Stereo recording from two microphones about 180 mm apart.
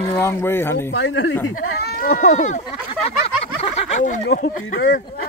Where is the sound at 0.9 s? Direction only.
90° left.